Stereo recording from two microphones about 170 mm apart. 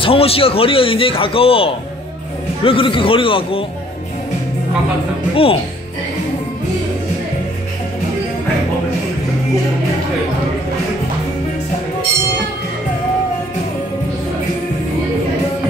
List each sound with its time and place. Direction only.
0.0 s a man's voice: 35° left (ahead or behind)
5.3 s a man's voice: 35° left (ahead or behind)